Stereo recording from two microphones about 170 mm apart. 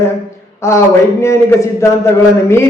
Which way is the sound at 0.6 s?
15° left (ahead or behind).